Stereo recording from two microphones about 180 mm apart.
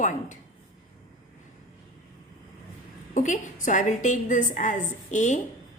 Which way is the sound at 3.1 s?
45° left (ahead or behind).